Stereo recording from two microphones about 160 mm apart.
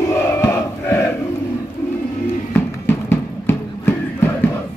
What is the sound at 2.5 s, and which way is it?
Music, 15° left (ahead or behind).